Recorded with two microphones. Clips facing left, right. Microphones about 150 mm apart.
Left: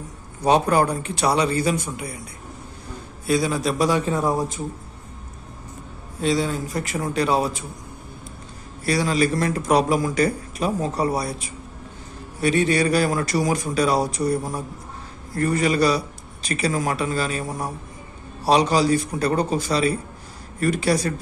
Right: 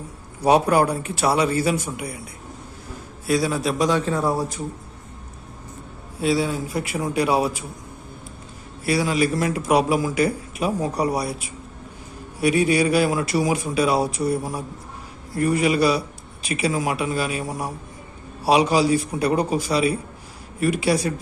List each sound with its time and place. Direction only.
0.4 s a man's voice: 10° right (ahead or behind)
3.3 s a man's voice: 5° right (ahead or behind)
4.0 s speech: 15° left (ahead or behind)
6.1 s a man's voice: 5° right (ahead or behind)
8.8 s a man's voice: 5° right (ahead or behind)